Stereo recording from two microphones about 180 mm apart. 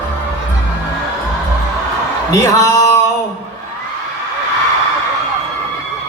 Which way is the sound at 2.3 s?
20° left (ahead or behind).